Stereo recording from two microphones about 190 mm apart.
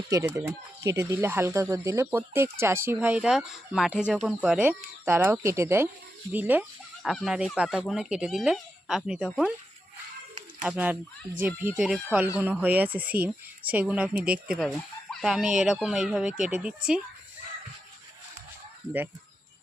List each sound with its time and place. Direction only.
0.1 s speech: 15° right (ahead or behind)
10.6 s speech: 5° right (ahead or behind)